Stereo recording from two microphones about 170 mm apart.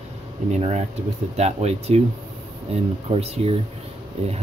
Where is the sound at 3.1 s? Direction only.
35° right (ahead or behind).